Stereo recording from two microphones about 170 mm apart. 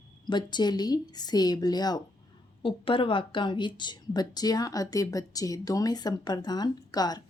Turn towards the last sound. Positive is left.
turn(degrees=25)  # may be behind; listen again after turning